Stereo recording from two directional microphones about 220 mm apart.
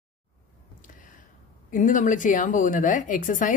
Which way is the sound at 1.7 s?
35° left (ahead or behind).